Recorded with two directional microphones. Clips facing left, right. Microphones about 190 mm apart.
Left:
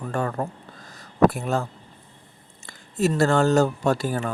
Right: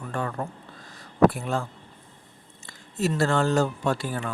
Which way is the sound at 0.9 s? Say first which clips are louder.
Left 1 dB; 45° left (ahead or behind).